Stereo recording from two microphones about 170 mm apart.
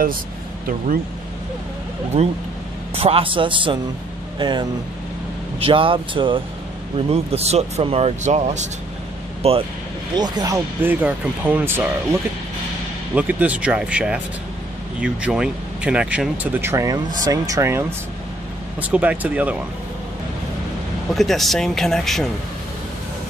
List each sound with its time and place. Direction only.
2.1 s speech: 35° right (ahead or behind)
10.1 s speech: 25° right (ahead or behind)
21.1 s speech: centre (ahead or behind)